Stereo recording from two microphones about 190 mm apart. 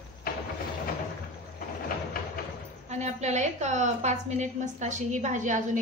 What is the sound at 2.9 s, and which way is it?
A woman's voice, 35° right (ahead or behind).